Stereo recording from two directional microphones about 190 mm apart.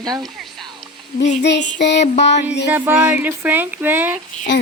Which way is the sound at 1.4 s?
65° left (ahead or behind).